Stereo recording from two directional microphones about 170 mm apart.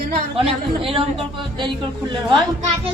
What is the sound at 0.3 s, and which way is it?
A man's voice, 35° right (ahead or behind).